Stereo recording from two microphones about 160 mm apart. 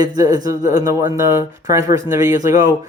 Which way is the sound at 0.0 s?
25° right (ahead or behind).